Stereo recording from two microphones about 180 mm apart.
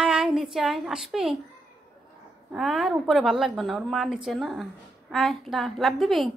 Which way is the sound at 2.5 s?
Centre (ahead or behind).